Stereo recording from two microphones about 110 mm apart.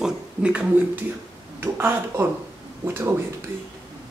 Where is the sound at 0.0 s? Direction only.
10° right (ahead or behind).